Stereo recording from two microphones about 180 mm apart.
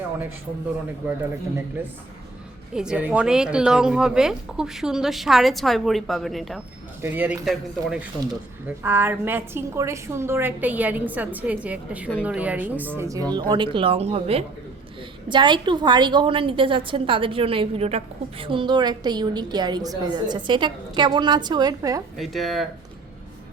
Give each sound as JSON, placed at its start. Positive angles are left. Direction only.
{"t": 2.7, "sound": "a woman's voice", "side_deg": -5}
{"t": 22.2, "sound": "speech", "side_deg": 0}